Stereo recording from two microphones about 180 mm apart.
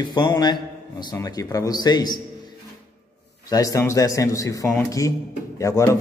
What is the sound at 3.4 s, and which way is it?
A man's voice, 20° left (ahead or behind).